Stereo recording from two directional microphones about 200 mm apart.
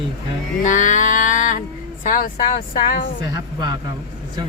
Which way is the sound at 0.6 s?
40° left (ahead or behind).